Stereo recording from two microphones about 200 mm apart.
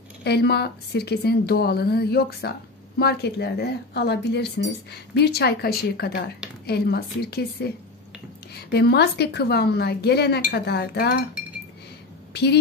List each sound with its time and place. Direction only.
0.2 s a woman's voice: 55° left (ahead or behind)
8.7 s speech: 55° left (ahead or behind)
12.3 s a woman's voice: 55° left (ahead or behind)